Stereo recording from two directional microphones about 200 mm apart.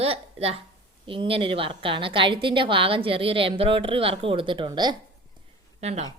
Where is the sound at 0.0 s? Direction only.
30° right (ahead or behind).